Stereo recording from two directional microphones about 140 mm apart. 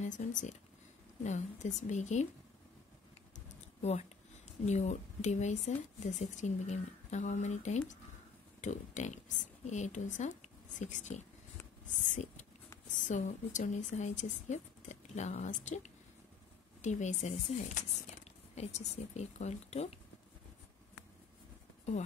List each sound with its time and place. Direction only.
0.0 s speech: 60° left (ahead or behind)
3.3 s a sound: 50° left (ahead or behind)
4.6 s speech: 55° left (ahead or behind)